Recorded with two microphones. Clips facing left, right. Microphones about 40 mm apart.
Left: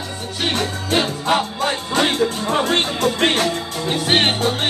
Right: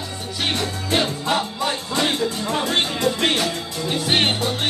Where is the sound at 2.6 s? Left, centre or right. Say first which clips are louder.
Left 1 dB; left.